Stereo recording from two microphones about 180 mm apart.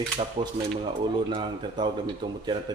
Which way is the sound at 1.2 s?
25° right (ahead or behind).